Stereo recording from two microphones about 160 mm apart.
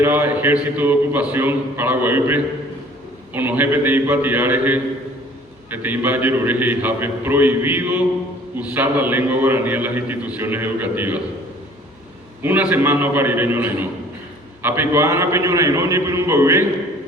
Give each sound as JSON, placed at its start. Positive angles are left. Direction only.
{"t": 0.0, "sound": "a man's voice", "side_deg": -10}
{"t": 12.4, "sound": "a man's voice", "side_deg": -10}